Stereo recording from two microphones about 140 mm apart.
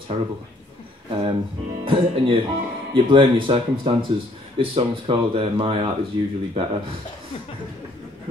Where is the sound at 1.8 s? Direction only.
40° right (ahead or behind).